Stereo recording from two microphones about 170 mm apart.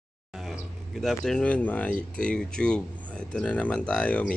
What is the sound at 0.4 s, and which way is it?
Speech, centre (ahead or behind).